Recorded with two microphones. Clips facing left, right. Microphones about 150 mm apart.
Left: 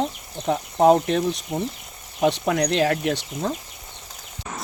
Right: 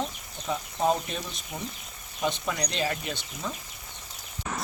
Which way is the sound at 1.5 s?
35° left (ahead or behind).